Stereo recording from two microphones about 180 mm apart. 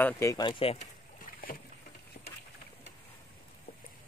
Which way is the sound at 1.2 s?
55° left (ahead or behind).